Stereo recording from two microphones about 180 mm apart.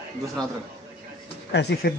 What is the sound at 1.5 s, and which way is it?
Speech, 70° left (ahead or behind).